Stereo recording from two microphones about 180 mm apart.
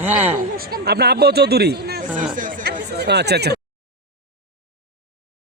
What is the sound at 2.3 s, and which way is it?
Chatter, 50° right (ahead or behind).